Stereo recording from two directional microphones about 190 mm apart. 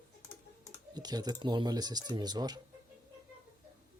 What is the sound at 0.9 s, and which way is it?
Speech, 20° right (ahead or behind).